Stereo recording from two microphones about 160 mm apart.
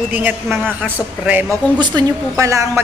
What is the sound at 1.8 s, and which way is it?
A woman's voice, 25° right (ahead or behind).